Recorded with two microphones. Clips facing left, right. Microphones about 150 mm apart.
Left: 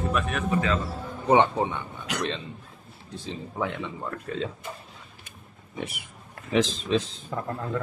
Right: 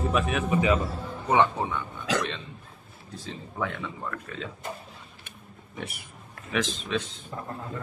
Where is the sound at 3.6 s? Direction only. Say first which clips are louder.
Left 1 dB; 25° left (ahead or behind).